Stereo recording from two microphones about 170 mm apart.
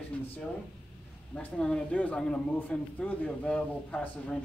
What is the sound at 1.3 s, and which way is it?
Speech, 5° left (ahead or behind).